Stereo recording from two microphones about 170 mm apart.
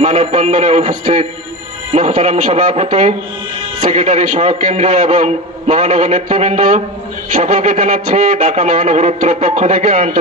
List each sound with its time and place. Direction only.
0.0 s a man's voice: 40° right (ahead or behind)